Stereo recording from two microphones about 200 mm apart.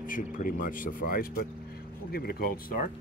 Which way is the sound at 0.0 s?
45° left (ahead or behind).